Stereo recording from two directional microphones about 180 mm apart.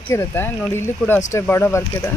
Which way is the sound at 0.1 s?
15° left (ahead or behind).